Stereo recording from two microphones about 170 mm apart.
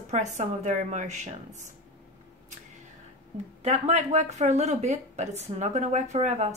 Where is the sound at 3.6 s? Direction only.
40° right (ahead or behind).